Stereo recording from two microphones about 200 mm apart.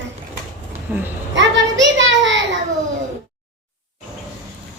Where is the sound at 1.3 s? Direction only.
65° right (ahead or behind).